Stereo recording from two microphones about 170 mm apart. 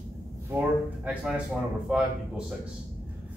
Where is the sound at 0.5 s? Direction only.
10° right (ahead or behind).